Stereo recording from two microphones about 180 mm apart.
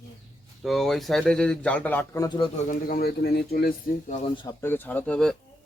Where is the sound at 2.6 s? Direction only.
50° left (ahead or behind).